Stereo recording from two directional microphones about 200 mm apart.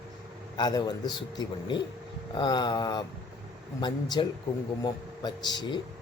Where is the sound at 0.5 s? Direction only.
20° left (ahead or behind).